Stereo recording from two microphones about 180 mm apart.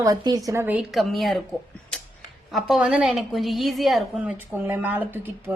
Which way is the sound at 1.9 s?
5° left (ahead or behind).